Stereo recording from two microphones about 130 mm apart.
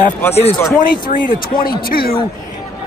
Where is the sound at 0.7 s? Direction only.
90° left.